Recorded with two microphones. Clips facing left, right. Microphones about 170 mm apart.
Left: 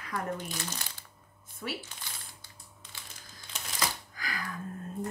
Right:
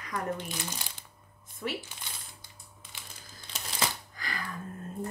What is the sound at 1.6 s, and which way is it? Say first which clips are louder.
Speech: right 3 dB; 5° right (ahead or behind).